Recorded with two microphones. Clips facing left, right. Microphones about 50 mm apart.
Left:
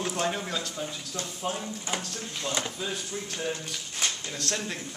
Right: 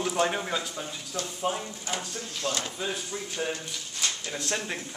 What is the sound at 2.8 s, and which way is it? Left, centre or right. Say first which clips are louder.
A man's voice: right 1 dB; centre.